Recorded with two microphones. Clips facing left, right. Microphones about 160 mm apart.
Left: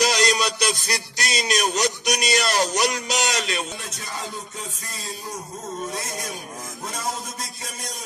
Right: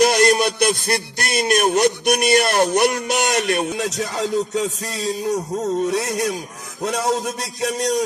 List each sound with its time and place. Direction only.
0.0 s music: 55° right (ahead or behind); by 8.0 s 75° right (ahead or behind)